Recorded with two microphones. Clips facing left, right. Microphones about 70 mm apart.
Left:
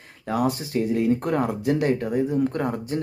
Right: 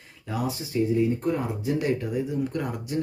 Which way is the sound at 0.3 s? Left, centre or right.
Left.